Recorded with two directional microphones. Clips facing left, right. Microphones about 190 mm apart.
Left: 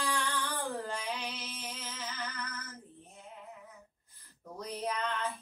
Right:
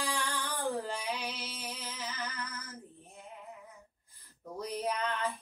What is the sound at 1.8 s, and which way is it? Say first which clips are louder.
Music: right 1 dB; 15° right (ahead or behind).